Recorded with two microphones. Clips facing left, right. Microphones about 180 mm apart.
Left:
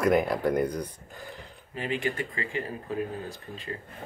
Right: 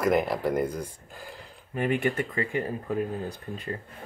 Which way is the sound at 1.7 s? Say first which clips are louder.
Right 4 dB; 50° right (ahead or behind).